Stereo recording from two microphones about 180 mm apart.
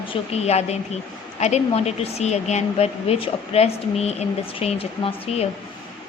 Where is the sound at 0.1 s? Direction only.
35° left (ahead or behind).